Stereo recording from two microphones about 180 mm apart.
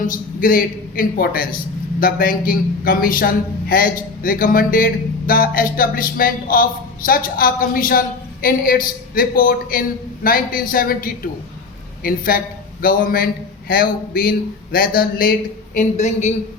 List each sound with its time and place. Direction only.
0.0 s speech: 50° left (ahead or behind)